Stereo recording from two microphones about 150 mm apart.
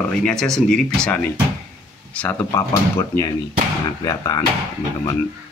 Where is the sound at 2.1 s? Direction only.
10° left (ahead or behind).